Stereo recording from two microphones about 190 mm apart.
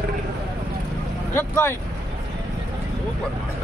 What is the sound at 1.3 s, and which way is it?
Speech, 10° left (ahead or behind).